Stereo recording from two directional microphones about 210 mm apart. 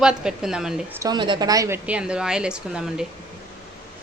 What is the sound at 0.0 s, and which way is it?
Speech, 5° right (ahead or behind).